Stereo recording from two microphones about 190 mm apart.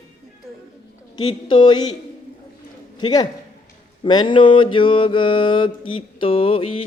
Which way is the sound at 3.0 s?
20° left (ahead or behind).